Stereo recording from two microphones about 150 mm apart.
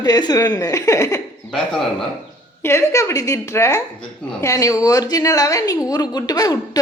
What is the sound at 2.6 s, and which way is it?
Speech, 20° left (ahead or behind).